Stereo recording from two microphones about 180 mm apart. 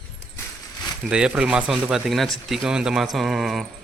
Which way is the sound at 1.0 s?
5° right (ahead or behind).